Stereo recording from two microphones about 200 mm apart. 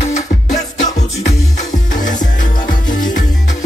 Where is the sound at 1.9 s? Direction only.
40° left (ahead or behind).